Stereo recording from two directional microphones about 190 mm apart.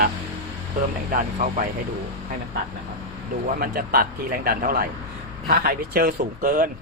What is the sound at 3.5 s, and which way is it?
Speech, 50° right (ahead or behind).